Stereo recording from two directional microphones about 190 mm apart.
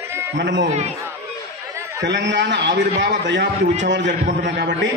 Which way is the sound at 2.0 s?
65° right (ahead or behind).